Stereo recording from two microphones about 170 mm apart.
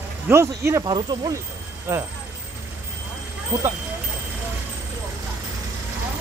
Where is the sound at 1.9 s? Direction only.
15° right (ahead or behind).